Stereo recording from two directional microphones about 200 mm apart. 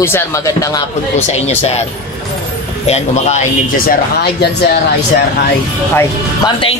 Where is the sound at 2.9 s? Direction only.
35° left (ahead or behind); by 4.5 s 50° left (ahead or behind).